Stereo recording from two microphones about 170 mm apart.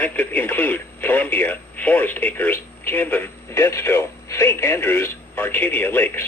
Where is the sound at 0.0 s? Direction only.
10° left (ahead or behind).